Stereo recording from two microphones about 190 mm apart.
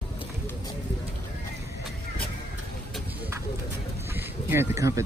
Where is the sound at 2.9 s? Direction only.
10° right (ahead or behind).